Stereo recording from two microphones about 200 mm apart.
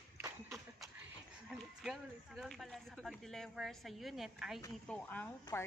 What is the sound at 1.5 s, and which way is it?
A woman's voice, centre (ahead or behind).